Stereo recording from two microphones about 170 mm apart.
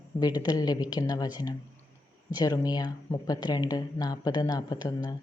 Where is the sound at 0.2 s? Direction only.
25° left (ahead or behind).